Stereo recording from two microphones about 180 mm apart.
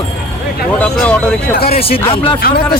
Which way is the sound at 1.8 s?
30° left (ahead or behind).